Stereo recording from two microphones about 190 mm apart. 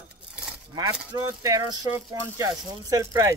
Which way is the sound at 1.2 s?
20° right (ahead or behind).